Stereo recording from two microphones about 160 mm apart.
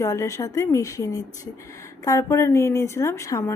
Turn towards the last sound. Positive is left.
turn(degrees=20)  # may be behind; listen again after turning